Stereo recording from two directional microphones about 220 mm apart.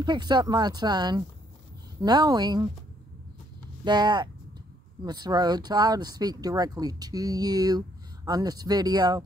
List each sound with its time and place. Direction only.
0.0 s speech: 20° right (ahead or behind)
3.8 s speech: 20° right (ahead or behind)